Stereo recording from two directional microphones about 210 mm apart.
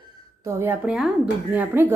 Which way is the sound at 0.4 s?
10° right (ahead or behind).